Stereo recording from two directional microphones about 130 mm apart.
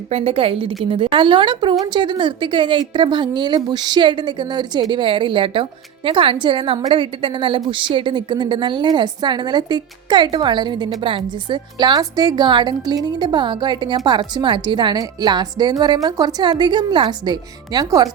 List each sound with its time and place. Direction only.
0.1 s a woman's voice: 50° right (ahead or behind); by 18.1 s 30° right (ahead or behind)